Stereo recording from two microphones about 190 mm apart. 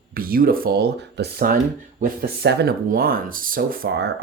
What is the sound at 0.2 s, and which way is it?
Speech, 50° right (ahead or behind).